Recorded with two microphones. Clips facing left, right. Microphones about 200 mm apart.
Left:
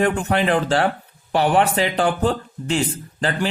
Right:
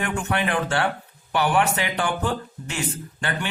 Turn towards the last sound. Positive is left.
turn(degrees=35)  # may be behind; listen again after turning